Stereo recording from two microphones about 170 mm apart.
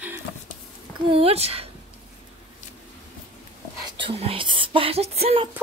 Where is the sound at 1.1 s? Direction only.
35° right (ahead or behind).